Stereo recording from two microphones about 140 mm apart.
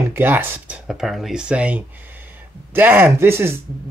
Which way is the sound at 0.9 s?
Centre (ahead or behind).